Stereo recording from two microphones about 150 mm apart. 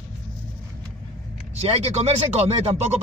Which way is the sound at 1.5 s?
45° right (ahead or behind).